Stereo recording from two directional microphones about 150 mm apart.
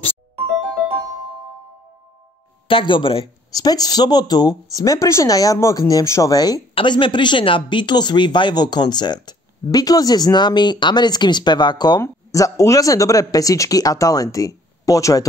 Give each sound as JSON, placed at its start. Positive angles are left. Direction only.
{"t": 2.7, "sound": "speech", "side_deg": 35}
{"t": 3.5, "sound": "speech", "side_deg": 25}